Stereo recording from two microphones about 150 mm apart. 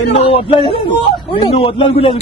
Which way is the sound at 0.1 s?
40° left (ahead or behind).